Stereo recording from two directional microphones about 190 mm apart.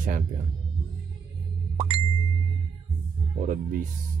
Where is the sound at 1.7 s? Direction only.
30° right (ahead or behind).